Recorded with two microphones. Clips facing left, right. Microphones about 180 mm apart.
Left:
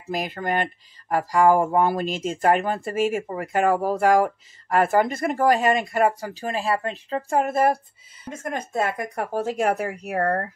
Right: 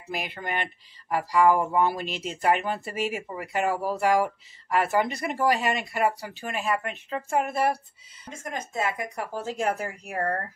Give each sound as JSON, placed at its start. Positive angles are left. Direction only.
{"t": 0.1, "sound": "speech", "side_deg": 40}
{"t": 8.4, "sound": "speech", "side_deg": 60}